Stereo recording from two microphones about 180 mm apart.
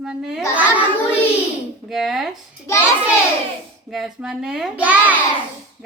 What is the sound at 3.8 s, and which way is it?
A woman's voice, centre (ahead or behind).